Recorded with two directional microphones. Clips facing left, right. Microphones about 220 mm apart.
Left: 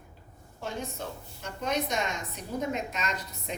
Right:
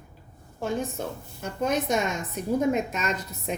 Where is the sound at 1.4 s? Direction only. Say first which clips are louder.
Right 5 dB; 50° right (ahead or behind).